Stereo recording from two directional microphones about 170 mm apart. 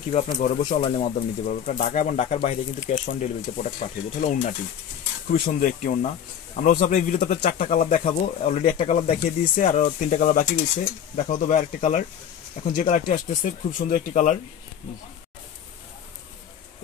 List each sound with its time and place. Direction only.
0.1 s speech: 40° left (ahead or behind)
1.0 s speech: 50° left (ahead or behind)
7.8 s speech: 40° left (ahead or behind)
9.6 s speech: 45° left (ahead or behind)